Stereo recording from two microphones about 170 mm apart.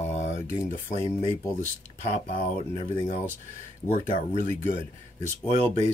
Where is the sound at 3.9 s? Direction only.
55° left (ahead or behind).